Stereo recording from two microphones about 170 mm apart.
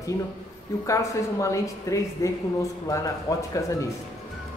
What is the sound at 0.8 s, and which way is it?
A woman's voice, 20° left (ahead or behind).